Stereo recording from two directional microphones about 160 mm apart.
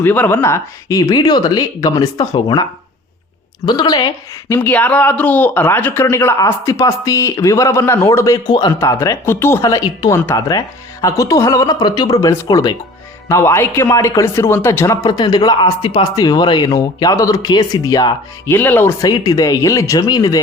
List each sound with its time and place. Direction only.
0.0 s speech: 10° left (ahead or behind)
3.7 s a woman's voice: 25° left (ahead or behind)
19.0 s speech: 25° left (ahead or behind)